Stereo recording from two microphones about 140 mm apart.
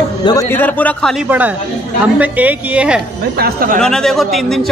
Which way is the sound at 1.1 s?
10° right (ahead or behind).